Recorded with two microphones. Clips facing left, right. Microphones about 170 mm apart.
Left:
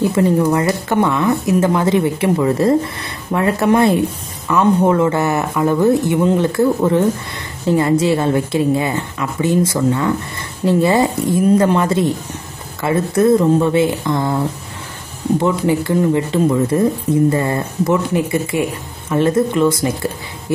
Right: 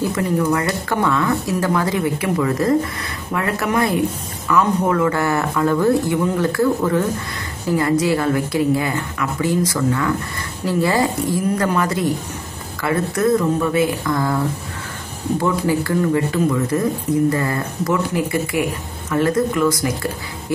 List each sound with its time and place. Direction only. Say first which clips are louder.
0.1 s speech: left 4 dB; 30° left (ahead or behind)
15.4 s speech: left 1 dB; 20° left (ahead or behind)